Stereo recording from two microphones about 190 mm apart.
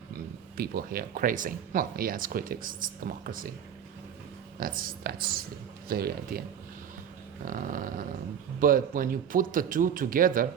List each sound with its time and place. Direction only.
0.5 s speech: 55° right (ahead or behind)
4.6 s speech: 50° right (ahead or behind)
7.4 s speech: 45° right (ahead or behind)